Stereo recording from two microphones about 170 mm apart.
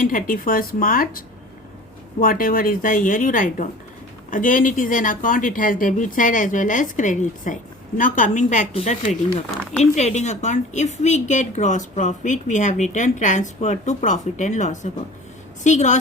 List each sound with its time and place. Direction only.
0.0 s speech: 55° left (ahead or behind)
2.2 s speech: 55° left (ahead or behind)